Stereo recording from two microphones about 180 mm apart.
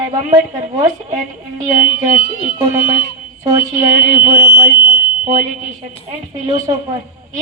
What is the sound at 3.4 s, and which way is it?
A woman's voice, 20° right (ahead or behind).